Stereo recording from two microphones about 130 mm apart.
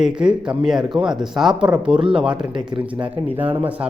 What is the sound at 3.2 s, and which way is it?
Speech, 15° right (ahead or behind).